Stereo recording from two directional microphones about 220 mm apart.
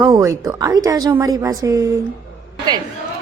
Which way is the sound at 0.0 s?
15° right (ahead or behind).